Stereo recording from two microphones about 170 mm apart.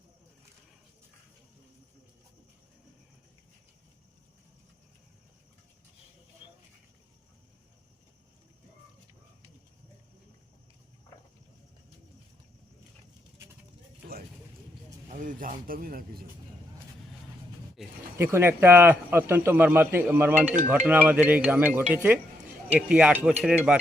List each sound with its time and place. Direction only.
15.1 s a man's voice: 50° right (ahead or behind)
17.8 s a sound: centre (ahead or behind)
18.2 s speech: 15° right (ahead or behind)